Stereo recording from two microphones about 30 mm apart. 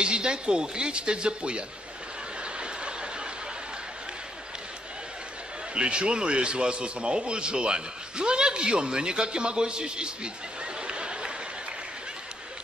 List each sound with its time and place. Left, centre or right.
0.0 s a man's voice: right
2.4 s a sound: right
5.8 s a man's voice: right